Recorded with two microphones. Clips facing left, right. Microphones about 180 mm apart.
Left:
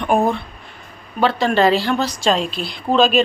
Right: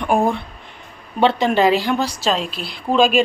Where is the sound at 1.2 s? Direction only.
20° right (ahead or behind).